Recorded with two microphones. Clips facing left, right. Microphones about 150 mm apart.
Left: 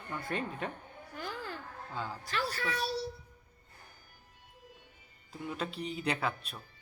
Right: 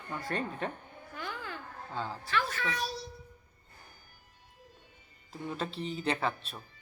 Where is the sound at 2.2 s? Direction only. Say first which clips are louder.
Right 2 dB; 35° left (ahead or behind).